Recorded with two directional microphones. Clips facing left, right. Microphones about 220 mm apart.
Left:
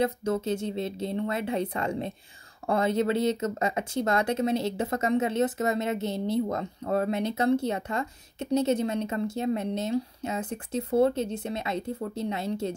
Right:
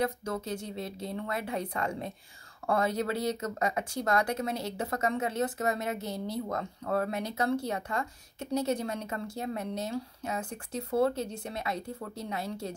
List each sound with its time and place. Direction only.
0.0 s speech: 25° left (ahead or behind)